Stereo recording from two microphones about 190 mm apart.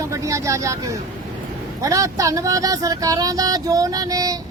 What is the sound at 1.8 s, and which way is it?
Speech, 15° right (ahead or behind).